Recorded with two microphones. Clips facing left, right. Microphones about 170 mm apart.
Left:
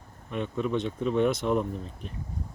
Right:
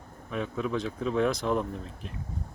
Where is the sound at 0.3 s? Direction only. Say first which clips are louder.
Left 2 dB; centre (ahead or behind).